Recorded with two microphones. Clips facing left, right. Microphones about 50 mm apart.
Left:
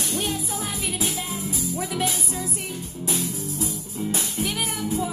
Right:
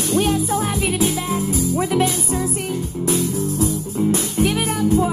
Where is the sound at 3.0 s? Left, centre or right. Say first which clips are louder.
Right 8 dB; right.